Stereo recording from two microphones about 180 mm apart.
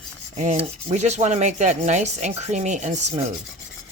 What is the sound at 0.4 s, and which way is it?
Rub, 35° right (ahead or behind).